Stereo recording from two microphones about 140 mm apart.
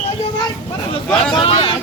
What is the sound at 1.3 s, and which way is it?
Vehicle, 40° left (ahead or behind).